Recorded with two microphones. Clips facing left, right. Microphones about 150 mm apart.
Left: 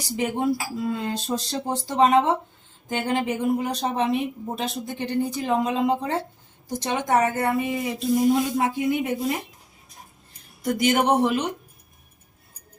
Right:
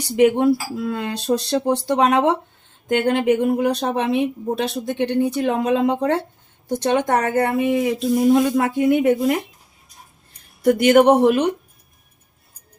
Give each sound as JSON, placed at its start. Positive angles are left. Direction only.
{"t": 0.2, "sound": "a woman's voice", "side_deg": -70}
{"t": 10.6, "sound": "speech", "side_deg": -60}